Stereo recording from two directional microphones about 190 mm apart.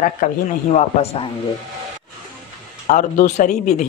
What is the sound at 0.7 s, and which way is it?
Speech, 30° left (ahead or behind).